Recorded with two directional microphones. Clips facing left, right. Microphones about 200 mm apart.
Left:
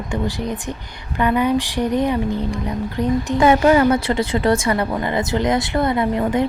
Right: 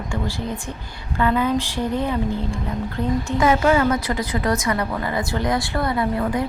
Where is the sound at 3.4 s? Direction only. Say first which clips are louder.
Left 4 dB; 35° left (ahead or behind).